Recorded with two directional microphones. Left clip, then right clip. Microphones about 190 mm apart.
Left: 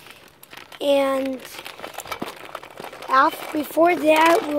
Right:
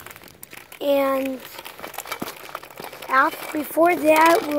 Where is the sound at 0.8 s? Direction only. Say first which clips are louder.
Left 1 dB; centre (ahead or behind).